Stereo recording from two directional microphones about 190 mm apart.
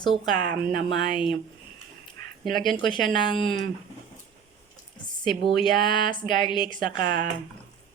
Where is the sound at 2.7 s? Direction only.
25° left (ahead or behind).